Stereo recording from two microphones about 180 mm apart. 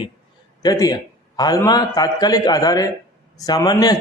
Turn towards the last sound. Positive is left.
turn(degrees=20)  # may be behind; listen again after turning